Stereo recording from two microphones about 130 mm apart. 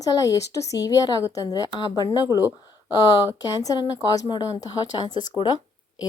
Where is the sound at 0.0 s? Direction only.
30° left (ahead or behind).